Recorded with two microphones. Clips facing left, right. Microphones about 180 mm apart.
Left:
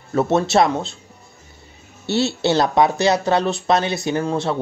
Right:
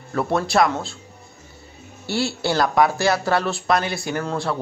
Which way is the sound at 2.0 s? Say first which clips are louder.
Left 4 dB; 20° left (ahead or behind).